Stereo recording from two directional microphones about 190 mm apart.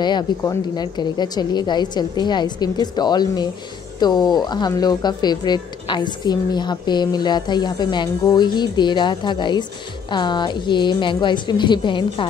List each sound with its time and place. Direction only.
0.0 s speech: 20° left (ahead or behind)